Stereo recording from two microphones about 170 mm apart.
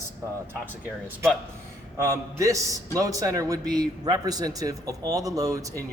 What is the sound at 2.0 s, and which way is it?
Speech, 20° right (ahead or behind).